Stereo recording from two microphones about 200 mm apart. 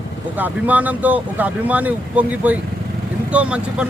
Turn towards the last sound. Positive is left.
turn(degrees=-5)  # may be behind; listen again after turning